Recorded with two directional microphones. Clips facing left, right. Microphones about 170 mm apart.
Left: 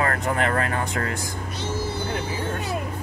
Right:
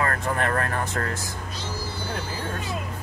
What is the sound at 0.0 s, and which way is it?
Speech, 20° left (ahead or behind).